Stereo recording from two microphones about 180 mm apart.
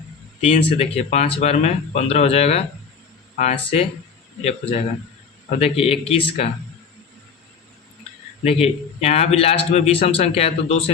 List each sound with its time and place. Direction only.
0.4 s speech: 35° left (ahead or behind)
8.4 s speech: 35° left (ahead or behind)